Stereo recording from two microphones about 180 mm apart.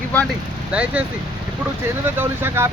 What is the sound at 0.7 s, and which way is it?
Speech, 5° right (ahead or behind).